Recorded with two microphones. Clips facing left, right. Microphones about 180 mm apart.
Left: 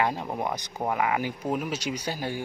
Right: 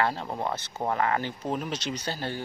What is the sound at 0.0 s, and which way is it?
Speech, 15° left (ahead or behind).